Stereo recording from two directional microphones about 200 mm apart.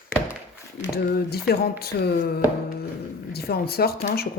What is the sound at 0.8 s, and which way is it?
Speech, 50° left (ahead or behind).